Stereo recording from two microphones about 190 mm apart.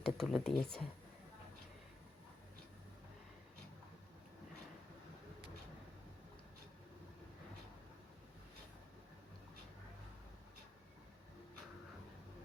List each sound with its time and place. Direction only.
0.0 s speech: centre (ahead or behind)